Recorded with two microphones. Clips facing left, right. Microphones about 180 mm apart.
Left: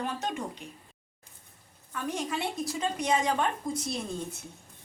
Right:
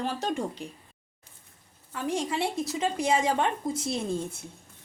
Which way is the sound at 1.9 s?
30° right (ahead or behind).